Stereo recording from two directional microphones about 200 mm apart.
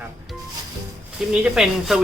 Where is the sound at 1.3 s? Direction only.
5° right (ahead or behind).